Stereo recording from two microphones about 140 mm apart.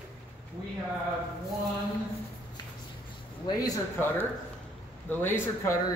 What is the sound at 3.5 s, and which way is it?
Speech, 30° left (ahead or behind).